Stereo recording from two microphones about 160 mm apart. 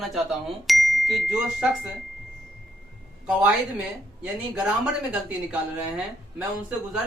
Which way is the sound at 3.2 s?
5° right (ahead or behind).